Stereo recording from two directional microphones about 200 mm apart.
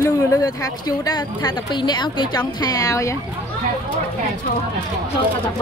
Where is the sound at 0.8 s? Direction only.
20° left (ahead or behind).